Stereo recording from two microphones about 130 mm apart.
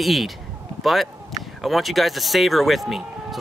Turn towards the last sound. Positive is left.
turn(degrees=0)  # may be behind; listen again after turning